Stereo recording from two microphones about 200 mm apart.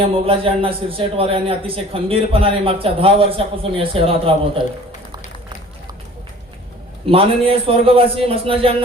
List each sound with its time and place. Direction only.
0.0 s a man's voice: 25° right (ahead or behind)
7.0 s a man's voice: 30° right (ahead or behind)